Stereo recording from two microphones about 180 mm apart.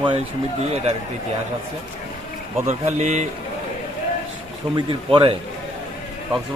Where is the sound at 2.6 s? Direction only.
40° right (ahead or behind).